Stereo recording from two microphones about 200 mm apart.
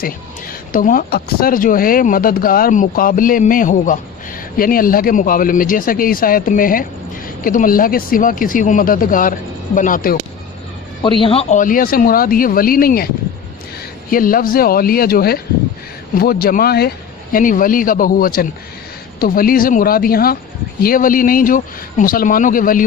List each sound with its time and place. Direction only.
0.0 s speech: 45° left (ahead or behind)
11.2 s speech: 30° left (ahead or behind); by 13.1 s 50° left (ahead or behind)
14.1 s speech: 45° left (ahead or behind)